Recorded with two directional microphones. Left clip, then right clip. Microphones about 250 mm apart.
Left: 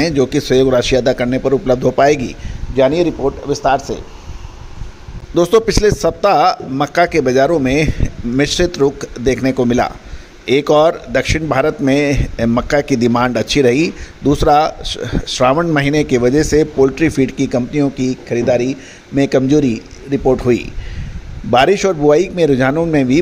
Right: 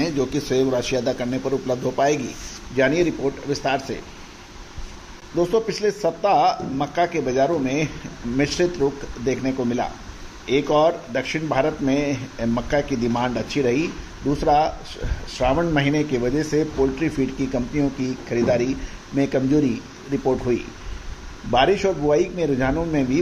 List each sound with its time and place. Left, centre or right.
0.0 s a man's voice: left
5.3 s a man's voice: left